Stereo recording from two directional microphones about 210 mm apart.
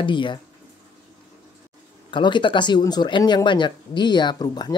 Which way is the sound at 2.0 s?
20° left (ahead or behind).